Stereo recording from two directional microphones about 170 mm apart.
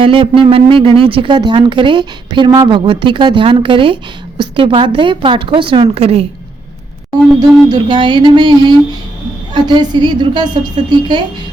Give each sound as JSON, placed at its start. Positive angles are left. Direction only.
{"t": 0.0, "sound": "a woman's voice", "side_deg": -30}
{"t": 7.3, "sound": "speech", "side_deg": -25}